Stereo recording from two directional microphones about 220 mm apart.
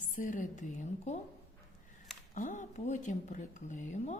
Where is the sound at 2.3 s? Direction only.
35° left (ahead or behind).